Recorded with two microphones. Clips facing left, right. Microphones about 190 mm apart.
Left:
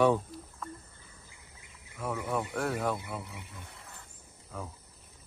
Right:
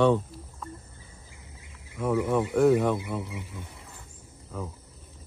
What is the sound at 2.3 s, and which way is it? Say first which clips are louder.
Speech: right 12 dB; 10° right (ahead or behind).